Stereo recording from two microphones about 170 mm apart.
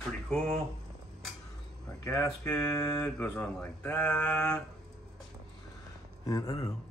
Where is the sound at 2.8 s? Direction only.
5° left (ahead or behind).